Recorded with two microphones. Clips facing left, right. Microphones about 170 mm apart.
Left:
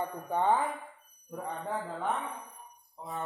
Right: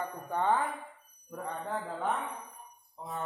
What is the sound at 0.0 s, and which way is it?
Speech, 20° left (ahead or behind).